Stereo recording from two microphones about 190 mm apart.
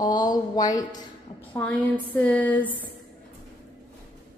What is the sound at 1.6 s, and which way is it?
A woman's voice, 5° left (ahead or behind).